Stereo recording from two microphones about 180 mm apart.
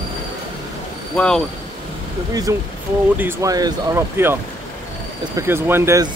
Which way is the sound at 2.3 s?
20° right (ahead or behind).